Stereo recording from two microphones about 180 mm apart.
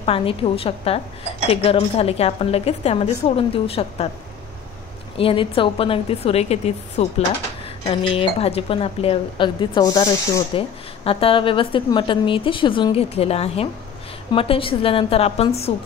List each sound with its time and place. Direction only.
0.0 s a woman's voice: 30° left (ahead or behind)
5.1 s a woman's voice: 30° left (ahead or behind)
11.1 s a woman's voice: 30° left (ahead or behind)